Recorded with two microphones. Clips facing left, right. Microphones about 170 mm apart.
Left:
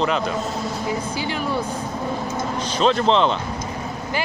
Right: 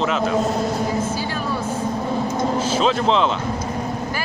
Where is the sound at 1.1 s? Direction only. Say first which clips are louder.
Right 1 dB; 15° left (ahead or behind).